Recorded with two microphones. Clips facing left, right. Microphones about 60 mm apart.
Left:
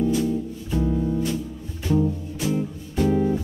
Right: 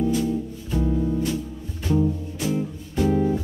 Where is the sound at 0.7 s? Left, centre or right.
Centre.